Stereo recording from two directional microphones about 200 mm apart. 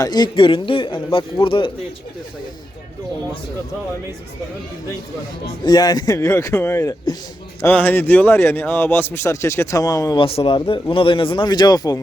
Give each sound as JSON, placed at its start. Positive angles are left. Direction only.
{"t": 0.0, "sound": "a man's voice", "side_deg": 20}
{"t": 5.6, "sound": "speech", "side_deg": 20}